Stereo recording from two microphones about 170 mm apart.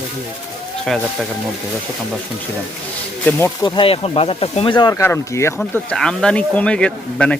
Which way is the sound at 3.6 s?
30° left (ahead or behind).